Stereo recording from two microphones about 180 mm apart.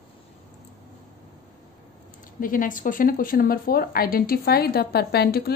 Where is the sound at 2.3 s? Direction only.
50° left (ahead or behind).